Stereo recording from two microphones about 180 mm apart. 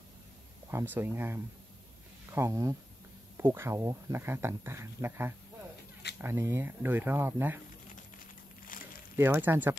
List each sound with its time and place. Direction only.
0.7 s speech: 15° right (ahead or behind)
8.7 s crumpling: 50° left (ahead or behind)
9.1 s speech: 10° right (ahead or behind)